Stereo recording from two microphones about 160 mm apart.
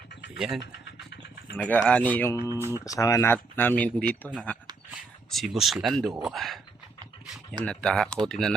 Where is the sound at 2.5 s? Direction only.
15° right (ahead or behind).